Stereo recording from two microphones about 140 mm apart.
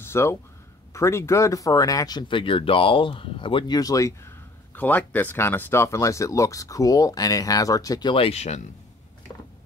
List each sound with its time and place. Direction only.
0.0 s speech: 20° left (ahead or behind)
4.7 s speech: 10° left (ahead or behind); by 8.6 s 50° left (ahead or behind)